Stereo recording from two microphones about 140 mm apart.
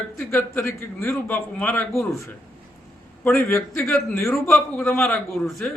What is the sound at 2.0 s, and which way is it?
Speech, 20° left (ahead or behind).